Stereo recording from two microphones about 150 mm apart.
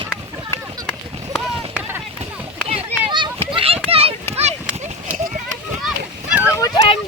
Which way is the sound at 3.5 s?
40° right (ahead or behind).